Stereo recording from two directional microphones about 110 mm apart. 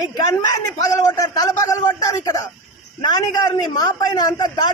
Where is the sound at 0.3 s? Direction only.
30° left (ahead or behind).